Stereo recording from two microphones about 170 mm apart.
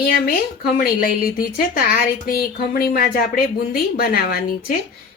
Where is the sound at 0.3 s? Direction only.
60° left (ahead or behind).